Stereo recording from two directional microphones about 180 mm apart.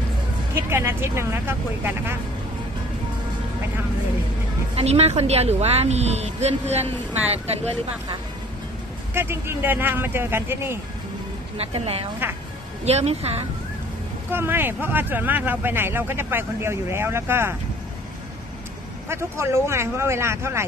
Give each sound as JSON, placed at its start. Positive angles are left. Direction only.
{"t": 0.6, "sound": "speech", "side_deg": -15}
{"t": 4.7, "sound": "speech", "side_deg": -35}
{"t": 9.1, "sound": "speech", "side_deg": -15}
{"t": 11.5, "sound": "speech", "side_deg": -35}
{"t": 14.3, "sound": "speech", "side_deg": -10}
{"t": 19.0, "sound": "speech", "side_deg": -15}